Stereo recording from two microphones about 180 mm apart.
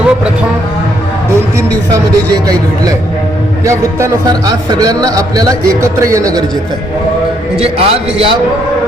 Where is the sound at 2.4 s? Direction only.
20° right (ahead or behind).